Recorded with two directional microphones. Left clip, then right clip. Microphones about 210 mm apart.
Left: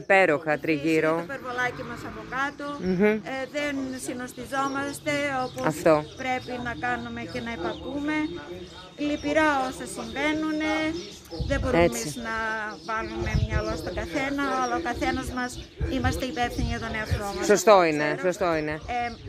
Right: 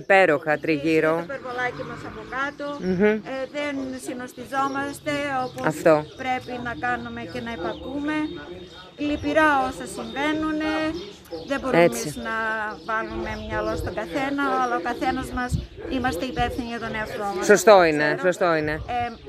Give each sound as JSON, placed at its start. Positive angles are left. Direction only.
{"t": 0.1, "sound": "speech", "side_deg": -5}
{"t": 1.3, "sound": "speech", "side_deg": 55}
{"t": 2.8, "sound": "speech", "side_deg": 0}
{"t": 3.3, "sound": "a sound", "side_deg": 40}
{"t": 4.1, "sound": "speech", "side_deg": 15}
{"t": 5.6, "sound": "speech", "side_deg": -5}
{"t": 6.2, "sound": "speech", "side_deg": 5}
{"t": 17.5, "sound": "speech", "side_deg": -10}
{"t": 18.9, "sound": "speech", "side_deg": 5}